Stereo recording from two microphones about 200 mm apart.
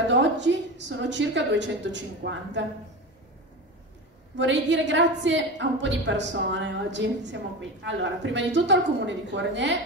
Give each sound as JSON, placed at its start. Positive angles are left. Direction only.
{"t": 0.1, "sound": "a woman's voice", "side_deg": -65}
{"t": 4.4, "sound": "a woman's voice", "side_deg": -65}